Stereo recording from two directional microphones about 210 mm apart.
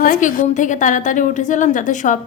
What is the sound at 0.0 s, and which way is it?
A woman's voice, 40° left (ahead or behind).